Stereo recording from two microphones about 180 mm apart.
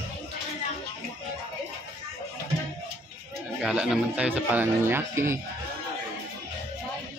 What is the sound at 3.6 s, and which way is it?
Speech, 5° right (ahead or behind).